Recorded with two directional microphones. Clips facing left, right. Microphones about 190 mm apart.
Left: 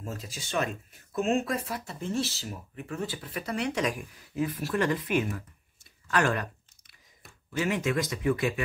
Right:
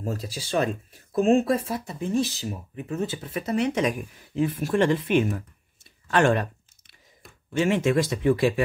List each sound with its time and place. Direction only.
0.0 s speech: 35° right (ahead or behind)
6.0 s a sound: 30° right (ahead or behind)
7.5 s speech: 25° right (ahead or behind)